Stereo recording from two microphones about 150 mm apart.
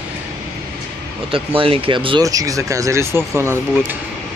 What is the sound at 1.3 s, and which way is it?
Speech, 35° right (ahead or behind).